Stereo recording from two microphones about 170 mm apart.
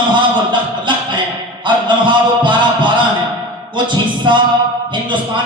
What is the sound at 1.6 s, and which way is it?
A man's voice, 25° right (ahead or behind).